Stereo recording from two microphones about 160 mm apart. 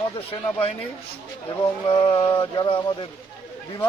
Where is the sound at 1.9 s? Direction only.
35° left (ahead or behind).